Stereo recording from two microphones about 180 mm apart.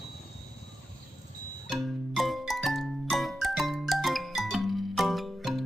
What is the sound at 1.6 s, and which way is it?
Music, centre (ahead or behind).